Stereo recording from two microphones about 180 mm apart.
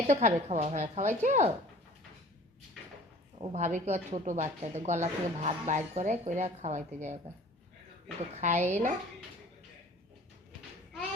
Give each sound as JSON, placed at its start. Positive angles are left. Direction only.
{"t": 0.1, "sound": "a woman's voice", "side_deg": -40}
{"t": 3.4, "sound": "a woman's voice", "side_deg": -40}
{"t": 8.4, "sound": "a woman's voice", "side_deg": -40}